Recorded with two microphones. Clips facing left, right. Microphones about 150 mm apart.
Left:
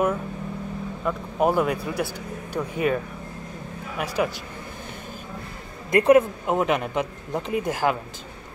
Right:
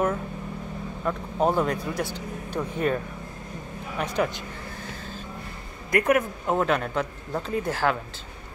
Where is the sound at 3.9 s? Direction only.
5° left (ahead or behind).